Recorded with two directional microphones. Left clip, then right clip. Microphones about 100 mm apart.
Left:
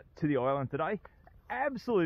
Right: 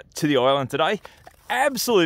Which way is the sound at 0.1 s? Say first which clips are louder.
Right 11 dB; 45° right (ahead or behind).